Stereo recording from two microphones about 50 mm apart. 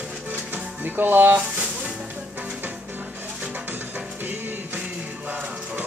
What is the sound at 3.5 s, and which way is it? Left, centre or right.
Music, right.